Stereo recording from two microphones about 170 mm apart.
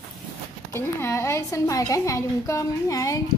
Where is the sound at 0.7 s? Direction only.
15° left (ahead or behind).